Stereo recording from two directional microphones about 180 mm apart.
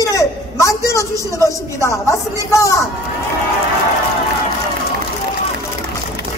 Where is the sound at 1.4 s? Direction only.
15° left (ahead or behind).